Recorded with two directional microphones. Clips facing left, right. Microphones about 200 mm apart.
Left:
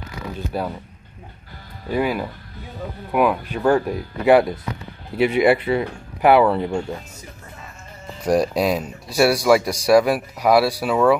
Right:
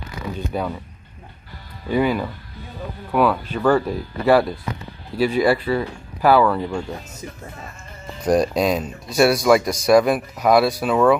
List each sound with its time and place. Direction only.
0.5 s speech: 5° left (ahead or behind)
1.9 s speech: 5° left (ahead or behind); by 6.8 s 25° left (ahead or behind)
8.3 s speech: 10° left (ahead or behind)